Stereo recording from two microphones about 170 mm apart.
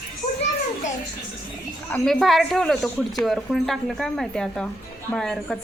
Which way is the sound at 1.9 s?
Centre (ahead or behind).